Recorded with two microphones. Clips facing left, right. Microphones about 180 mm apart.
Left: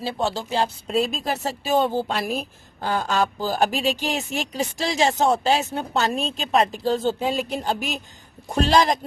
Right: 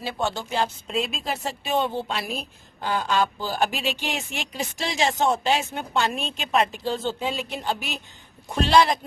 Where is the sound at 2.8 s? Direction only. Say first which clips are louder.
Left 1 dB; 40° left (ahead or behind).